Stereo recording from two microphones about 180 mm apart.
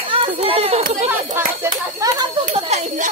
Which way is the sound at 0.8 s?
40° right (ahead or behind).